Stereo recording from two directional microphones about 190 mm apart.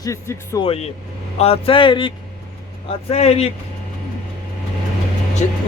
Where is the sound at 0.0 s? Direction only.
15° left (ahead or behind).